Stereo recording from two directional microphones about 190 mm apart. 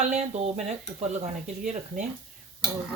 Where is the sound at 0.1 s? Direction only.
35° right (ahead or behind).